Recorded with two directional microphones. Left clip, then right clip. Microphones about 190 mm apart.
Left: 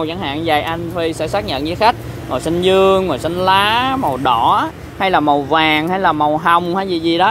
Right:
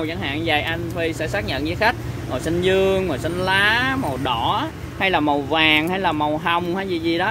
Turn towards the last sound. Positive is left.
turn(degrees=30)  # may be behind; listen again after turning